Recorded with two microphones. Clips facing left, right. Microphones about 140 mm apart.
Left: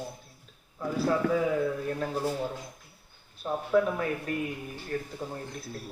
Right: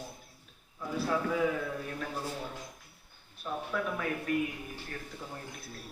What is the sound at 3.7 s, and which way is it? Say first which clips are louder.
Speech: left 12 dB; 30° left (ahead or behind).